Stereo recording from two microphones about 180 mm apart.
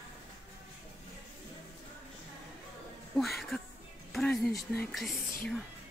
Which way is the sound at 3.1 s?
Centre (ahead or behind).